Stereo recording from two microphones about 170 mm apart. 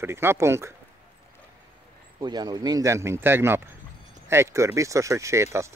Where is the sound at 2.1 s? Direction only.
25° right (ahead or behind).